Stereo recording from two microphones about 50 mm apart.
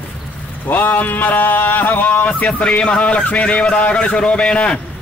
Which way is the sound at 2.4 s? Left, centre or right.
Left.